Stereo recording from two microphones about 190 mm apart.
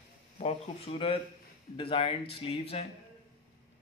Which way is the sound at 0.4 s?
35° left (ahead or behind).